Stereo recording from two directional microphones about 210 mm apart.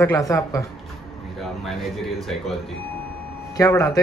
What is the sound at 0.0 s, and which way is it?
Speech, 15° left (ahead or behind).